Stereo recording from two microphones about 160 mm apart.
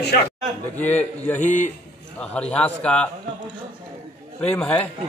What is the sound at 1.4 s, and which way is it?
Speech, 50° left (ahead or behind).